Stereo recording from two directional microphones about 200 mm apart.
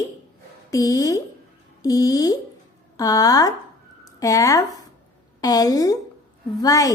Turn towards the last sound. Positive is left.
turn(degrees=15)  # may be behind; listen again after turning